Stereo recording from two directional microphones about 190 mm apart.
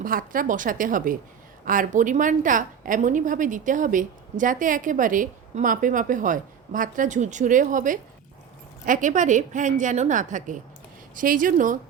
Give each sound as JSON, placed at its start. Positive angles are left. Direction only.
{"t": 0.0, "sound": "a woman's voice", "side_deg": -45}